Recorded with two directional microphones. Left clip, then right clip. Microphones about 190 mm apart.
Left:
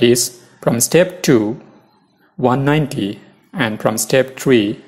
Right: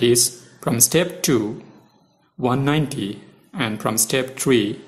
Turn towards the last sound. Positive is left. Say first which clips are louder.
# left 4 dB
turn(degrees=15)  # may be behind; listen again after turning